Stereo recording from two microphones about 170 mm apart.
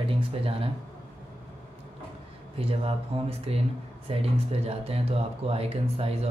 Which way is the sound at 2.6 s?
35° right (ahead or behind).